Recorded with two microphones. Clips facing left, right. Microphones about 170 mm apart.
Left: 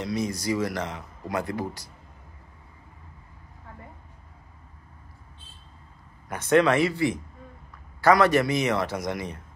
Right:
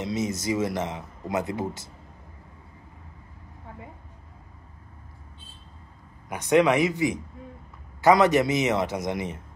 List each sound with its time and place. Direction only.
0.0 s speech: 20° right (ahead or behind)
6.2 s speech: 15° right (ahead or behind)